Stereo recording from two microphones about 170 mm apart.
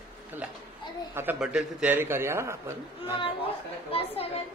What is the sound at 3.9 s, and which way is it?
Speech, 35° left (ahead or behind).